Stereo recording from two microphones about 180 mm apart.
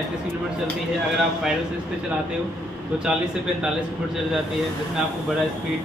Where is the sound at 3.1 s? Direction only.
5° right (ahead or behind).